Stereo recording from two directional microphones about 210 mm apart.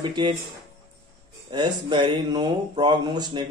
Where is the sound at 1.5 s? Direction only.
20° right (ahead or behind).